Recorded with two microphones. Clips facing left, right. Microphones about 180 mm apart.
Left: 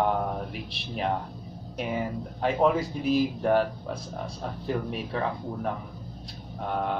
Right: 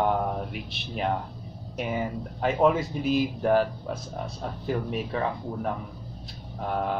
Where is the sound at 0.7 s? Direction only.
Centre (ahead or behind).